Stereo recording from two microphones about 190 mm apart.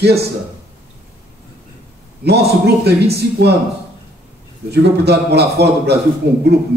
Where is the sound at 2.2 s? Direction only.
60° right (ahead or behind).